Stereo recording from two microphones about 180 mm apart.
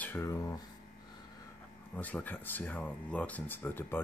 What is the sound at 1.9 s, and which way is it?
Speech, 10° left (ahead or behind).